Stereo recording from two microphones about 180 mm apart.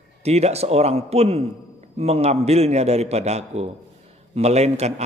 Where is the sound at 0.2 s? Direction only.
35° right (ahead or behind).